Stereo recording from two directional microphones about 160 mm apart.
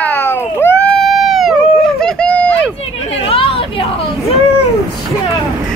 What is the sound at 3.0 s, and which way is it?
Chatter, 35° left (ahead or behind).